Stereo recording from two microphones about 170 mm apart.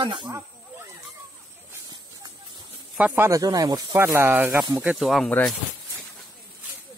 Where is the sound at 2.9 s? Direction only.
10° right (ahead or behind); by 5.5 s 5° left (ahead or behind).